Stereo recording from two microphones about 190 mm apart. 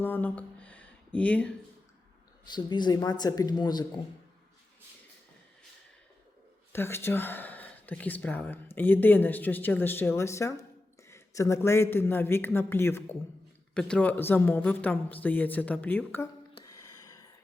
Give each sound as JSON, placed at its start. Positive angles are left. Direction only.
{"t": 0.0, "sound": "a sound", "side_deg": 10}
{"t": 2.5, "sound": "speech", "side_deg": 25}
{"t": 6.7, "sound": "speech", "side_deg": 10}
{"t": 16.6, "sound": "music", "side_deg": 20}